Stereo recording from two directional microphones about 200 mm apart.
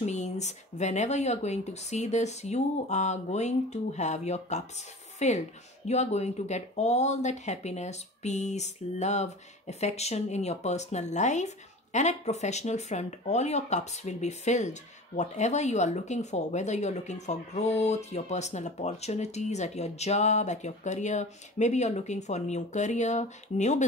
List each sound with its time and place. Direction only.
0.0 s speech: 35° left (ahead or behind)